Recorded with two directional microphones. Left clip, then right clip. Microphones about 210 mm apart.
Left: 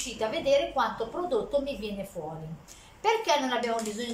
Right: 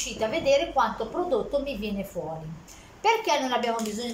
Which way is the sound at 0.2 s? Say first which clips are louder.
Right 2 dB; centre (ahead or behind).